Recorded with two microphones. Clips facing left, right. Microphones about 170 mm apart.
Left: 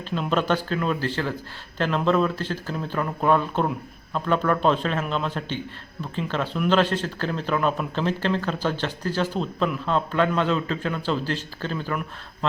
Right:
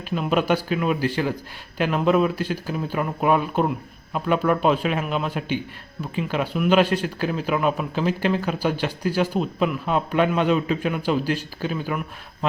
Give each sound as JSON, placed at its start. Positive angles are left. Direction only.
{"t": 0.1, "sound": "speech", "side_deg": -10}